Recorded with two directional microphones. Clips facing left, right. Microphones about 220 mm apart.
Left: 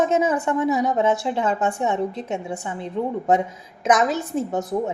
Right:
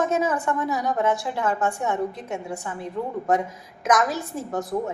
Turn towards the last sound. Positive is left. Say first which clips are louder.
# left 3 dB
turn(degrees=25)  # may be behind; listen again after turning